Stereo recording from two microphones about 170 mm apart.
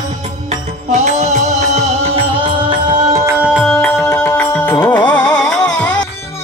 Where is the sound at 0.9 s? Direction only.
45° right (ahead or behind); by 6.0 s 5° left (ahead or behind).